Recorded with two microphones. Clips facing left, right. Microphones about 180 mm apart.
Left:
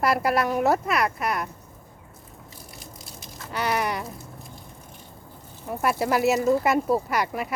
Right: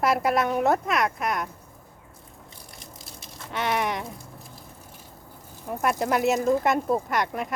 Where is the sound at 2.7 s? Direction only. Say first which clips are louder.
Left 1 dB; centre (ahead or behind).